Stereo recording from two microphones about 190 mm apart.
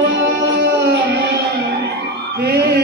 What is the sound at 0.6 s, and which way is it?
Music, 55° right (ahead or behind).